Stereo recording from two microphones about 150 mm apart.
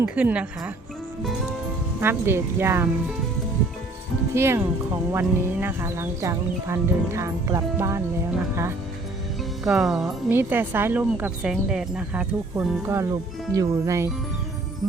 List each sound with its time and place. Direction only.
0.0 s speech: 10° right (ahead or behind)
2.0 s speech: 15° right (ahead or behind)
4.4 s speech: 15° right (ahead or behind)
9.6 s speech: 5° right (ahead or behind)
10.3 s speech: 15° right (ahead or behind)